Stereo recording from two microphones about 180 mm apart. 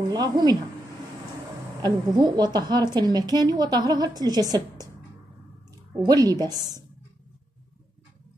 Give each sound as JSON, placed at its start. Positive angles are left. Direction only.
{"t": 0.1, "sound": "a woman's voice", "side_deg": -20}
{"t": 1.8, "sound": "a woman's voice", "side_deg": -20}
{"t": 6.0, "sound": "a woman's voice", "side_deg": -20}